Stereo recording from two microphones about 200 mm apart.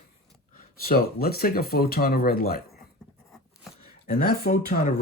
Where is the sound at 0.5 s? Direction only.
45° left (ahead or behind).